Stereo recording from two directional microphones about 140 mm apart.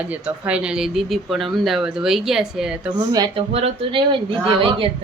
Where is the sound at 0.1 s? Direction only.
10° right (ahead or behind).